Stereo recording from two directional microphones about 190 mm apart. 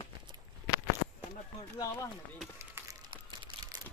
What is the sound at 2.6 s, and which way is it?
Crumpling, 15° right (ahead or behind).